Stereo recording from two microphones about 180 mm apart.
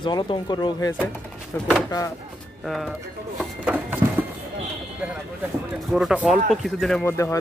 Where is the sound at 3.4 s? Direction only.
10° right (ahead or behind).